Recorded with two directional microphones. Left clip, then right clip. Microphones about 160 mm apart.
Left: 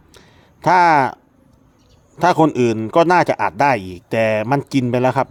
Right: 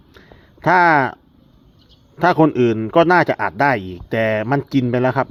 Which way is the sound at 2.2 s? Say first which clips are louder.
Even; 15° left (ahead or behind).